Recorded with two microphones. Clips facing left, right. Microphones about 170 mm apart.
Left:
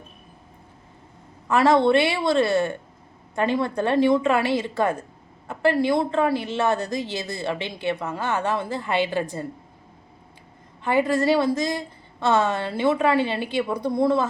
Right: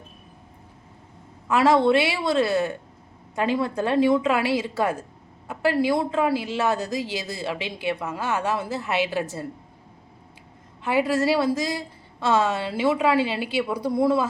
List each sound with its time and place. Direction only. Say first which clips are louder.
1.5 s a woman's voice: left 1 dB; 5° right (ahead or behind)
10.8 s a woman's voice: left 1 dB; 5° right (ahead or behind)